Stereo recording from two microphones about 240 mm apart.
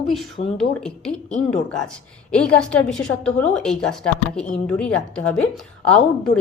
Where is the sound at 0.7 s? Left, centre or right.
Centre.